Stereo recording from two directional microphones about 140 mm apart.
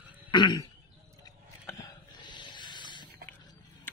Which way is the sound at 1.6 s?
30° left (ahead or behind).